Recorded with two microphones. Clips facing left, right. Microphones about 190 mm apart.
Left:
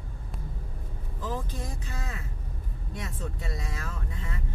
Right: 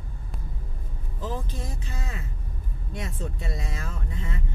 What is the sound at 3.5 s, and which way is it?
Speech, 25° right (ahead or behind).